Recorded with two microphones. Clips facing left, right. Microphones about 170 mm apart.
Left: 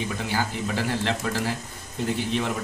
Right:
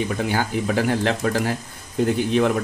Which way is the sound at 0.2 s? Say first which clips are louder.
Right 5 dB; 55° right (ahead or behind).